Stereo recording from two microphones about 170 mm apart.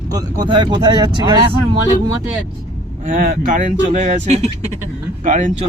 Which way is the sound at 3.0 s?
55° right (ahead or behind).